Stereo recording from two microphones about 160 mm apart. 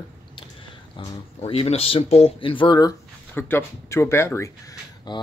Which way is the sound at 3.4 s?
15° left (ahead or behind).